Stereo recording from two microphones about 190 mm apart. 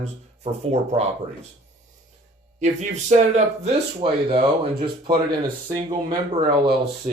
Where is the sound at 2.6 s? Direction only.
40° right (ahead or behind).